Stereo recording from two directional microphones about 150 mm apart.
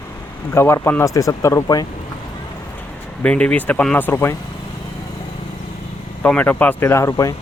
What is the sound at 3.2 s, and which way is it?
Speech, 10° left (ahead or behind).